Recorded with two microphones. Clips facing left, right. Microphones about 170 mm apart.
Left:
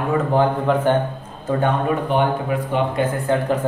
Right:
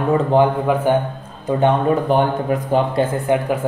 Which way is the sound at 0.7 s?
10° right (ahead or behind).